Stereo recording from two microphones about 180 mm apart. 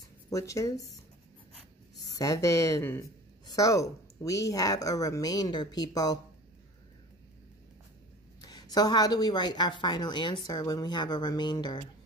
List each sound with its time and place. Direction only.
0.3 s speech: 15° left (ahead or behind)
2.0 s speech: 20° left (ahead or behind)
8.4 s speech: 20° left (ahead or behind)